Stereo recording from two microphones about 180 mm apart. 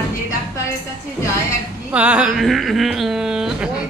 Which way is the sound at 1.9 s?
5° right (ahead or behind).